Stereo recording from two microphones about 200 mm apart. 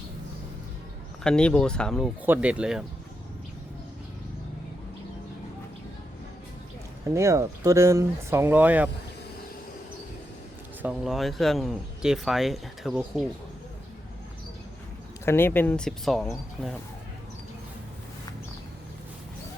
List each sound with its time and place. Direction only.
1.2 s speech: 5° left (ahead or behind)
2.2 s speech: 10° right (ahead or behind)
7.1 s speech: 15° right (ahead or behind)
10.8 s speech: centre (ahead or behind)
15.2 s speech: 10° left (ahead or behind)